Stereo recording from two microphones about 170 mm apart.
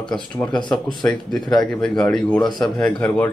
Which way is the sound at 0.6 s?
25° left (ahead or behind).